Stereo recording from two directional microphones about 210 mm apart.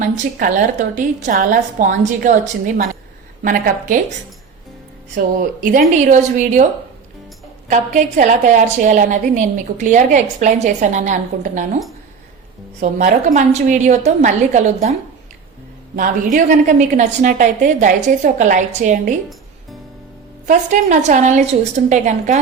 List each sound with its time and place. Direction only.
0.0 s a woman's voice: 40° right (ahead or behind)
3.4 s a woman's voice: 40° right (ahead or behind)
5.1 s a woman's voice: 40° right (ahead or behind)
7.7 s a woman's voice: 35° right (ahead or behind)
12.8 s a woman's voice: 40° right (ahead or behind)
16.0 s a woman's voice: 40° right (ahead or behind)
20.5 s a woman's voice: 35° right (ahead or behind)